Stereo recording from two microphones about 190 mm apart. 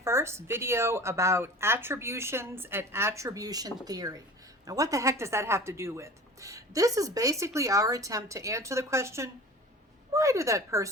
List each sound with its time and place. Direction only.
0.0 s speech: 15° right (ahead or behind)